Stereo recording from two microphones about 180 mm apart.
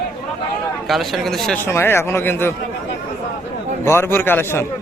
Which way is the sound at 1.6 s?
15° left (ahead or behind).